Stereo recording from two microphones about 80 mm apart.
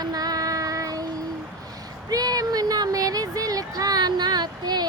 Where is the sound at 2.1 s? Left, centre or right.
Right.